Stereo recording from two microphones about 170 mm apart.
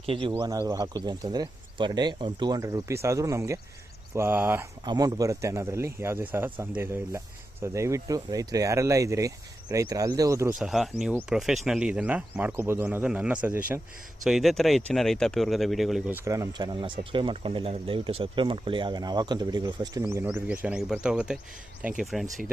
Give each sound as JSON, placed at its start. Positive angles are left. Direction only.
{"t": 0.0, "sound": "speech", "side_deg": -30}
{"t": 0.3, "sound": "speech", "side_deg": -20}
{"t": 10.6, "sound": "speech", "side_deg": 0}
{"t": 20.2, "sound": "speech", "side_deg": -10}